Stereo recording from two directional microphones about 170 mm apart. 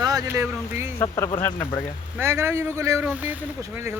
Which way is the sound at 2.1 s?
15° right (ahead or behind).